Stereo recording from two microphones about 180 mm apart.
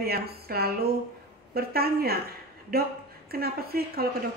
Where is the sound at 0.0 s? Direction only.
60° right (ahead or behind).